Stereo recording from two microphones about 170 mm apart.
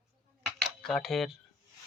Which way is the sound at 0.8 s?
Centre (ahead or behind).